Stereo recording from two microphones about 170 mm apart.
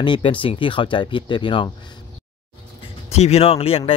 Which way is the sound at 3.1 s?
40° left (ahead or behind).